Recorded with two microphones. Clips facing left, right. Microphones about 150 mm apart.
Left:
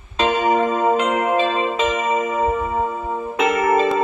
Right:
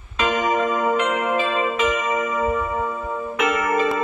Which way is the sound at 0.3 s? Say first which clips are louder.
Left 3 dB; 30° left (ahead or behind).